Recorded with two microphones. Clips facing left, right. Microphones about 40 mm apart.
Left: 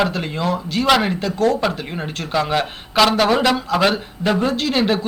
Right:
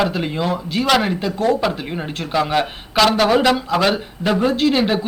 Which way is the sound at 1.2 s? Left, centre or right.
Right.